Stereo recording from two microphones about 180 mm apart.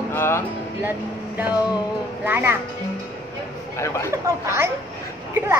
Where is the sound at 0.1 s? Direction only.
15° left (ahead or behind).